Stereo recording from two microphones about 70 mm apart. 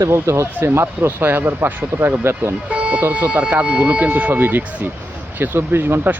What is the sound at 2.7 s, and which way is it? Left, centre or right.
Music, centre.